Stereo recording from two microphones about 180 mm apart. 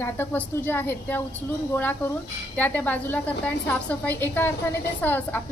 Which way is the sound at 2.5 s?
10° left (ahead or behind).